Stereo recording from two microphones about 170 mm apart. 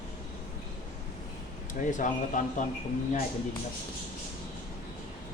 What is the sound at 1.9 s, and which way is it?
Speech, 50° left (ahead or behind).